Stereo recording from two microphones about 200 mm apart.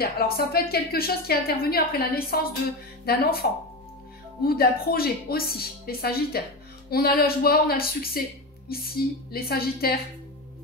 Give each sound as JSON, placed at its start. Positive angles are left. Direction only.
{"t": 0.0, "sound": "a woman's voice", "side_deg": 50}